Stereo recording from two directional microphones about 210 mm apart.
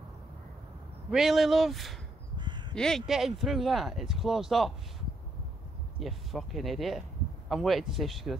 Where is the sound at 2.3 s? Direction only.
20° right (ahead or behind).